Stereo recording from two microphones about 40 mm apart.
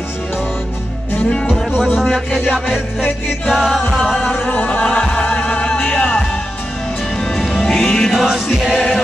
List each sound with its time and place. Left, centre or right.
2.0 s music: centre
2.4 s music: centre
4.5 s music: left
7.3 s music: centre
7.6 s music: centre
8.1 s music: centre